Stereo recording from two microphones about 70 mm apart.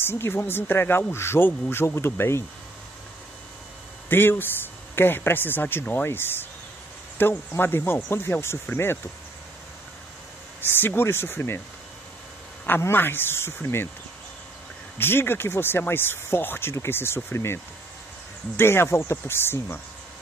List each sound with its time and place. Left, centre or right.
0.0 s speech: left
4.1 s speech: left
10.8 s speech: left
12.6 s speech: left
15.0 s speech: left
18.6 s speech: left